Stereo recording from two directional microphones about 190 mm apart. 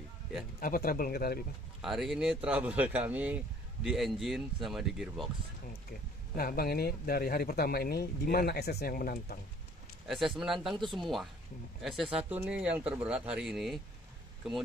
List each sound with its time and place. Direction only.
0.6 s speech: 50° left (ahead or behind)
1.8 s speech: centre (ahead or behind)
6.3 s speech: 50° left (ahead or behind)
10.0 s speech: centre (ahead or behind)